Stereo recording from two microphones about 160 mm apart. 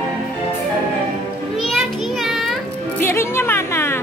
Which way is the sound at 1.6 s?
Centre (ahead or behind).